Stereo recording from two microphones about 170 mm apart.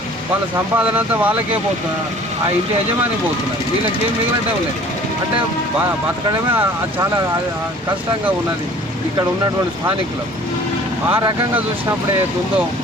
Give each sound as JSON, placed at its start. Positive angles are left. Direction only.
{"t": 0.8, "sound": "speech", "side_deg": -10}
{"t": 11.1, "sound": "speech", "side_deg": -20}